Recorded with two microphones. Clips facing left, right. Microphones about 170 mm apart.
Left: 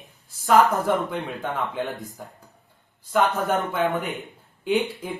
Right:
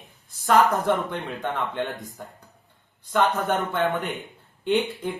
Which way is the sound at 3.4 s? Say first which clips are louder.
Left 1 dB; centre (ahead or behind).